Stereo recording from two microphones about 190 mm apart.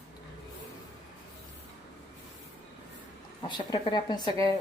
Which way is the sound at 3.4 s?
20° left (ahead or behind).